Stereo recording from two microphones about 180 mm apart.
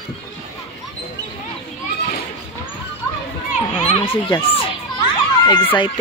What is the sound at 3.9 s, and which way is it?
Speech, 30° left (ahead or behind).